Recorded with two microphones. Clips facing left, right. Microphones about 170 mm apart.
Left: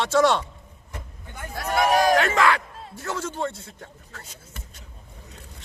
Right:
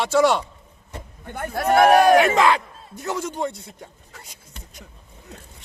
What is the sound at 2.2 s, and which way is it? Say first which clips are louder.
Battle cry: right 4 dB; 20° right (ahead or behind).